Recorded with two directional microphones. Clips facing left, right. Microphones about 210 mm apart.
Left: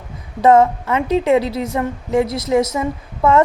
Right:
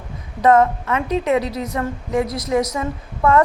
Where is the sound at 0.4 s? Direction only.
25° left (ahead or behind).